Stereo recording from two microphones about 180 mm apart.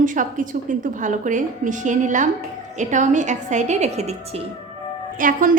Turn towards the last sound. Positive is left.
turn(degrees=-45)  # may be behind; listen again after turning